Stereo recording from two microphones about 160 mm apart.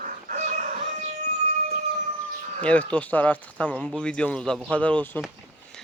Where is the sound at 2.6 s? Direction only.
10° left (ahead or behind).